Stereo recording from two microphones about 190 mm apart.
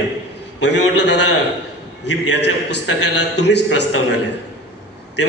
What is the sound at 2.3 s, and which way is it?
A man's voice, 65° left (ahead or behind).